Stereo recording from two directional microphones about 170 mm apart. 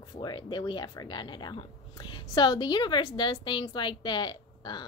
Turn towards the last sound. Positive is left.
turn(degrees=25)  # may be behind; listen again after turning